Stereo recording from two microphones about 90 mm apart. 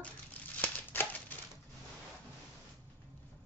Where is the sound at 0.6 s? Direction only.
20° left (ahead or behind).